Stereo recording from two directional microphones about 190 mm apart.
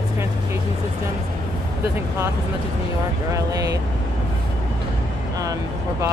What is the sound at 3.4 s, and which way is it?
Speech, 20° right (ahead or behind).